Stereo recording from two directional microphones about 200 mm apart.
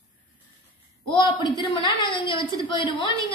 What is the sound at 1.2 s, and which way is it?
A woman's voice, 20° left (ahead or behind).